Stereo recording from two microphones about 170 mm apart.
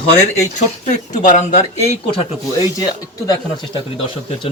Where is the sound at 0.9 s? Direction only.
50° left (ahead or behind).